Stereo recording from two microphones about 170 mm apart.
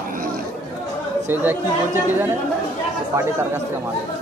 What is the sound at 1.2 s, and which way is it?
Speech, 15° right (ahead or behind).